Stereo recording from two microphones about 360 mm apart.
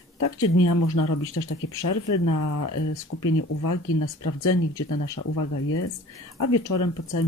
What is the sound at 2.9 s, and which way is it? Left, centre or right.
Speech, left.